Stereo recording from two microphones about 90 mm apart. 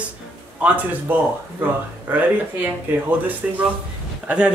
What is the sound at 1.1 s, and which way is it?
A woman's voice, 20° right (ahead or behind).